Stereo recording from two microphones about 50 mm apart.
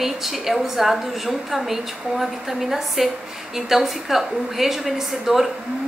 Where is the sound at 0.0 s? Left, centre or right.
Centre.